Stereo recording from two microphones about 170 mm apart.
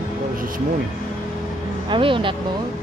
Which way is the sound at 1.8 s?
30° right (ahead or behind).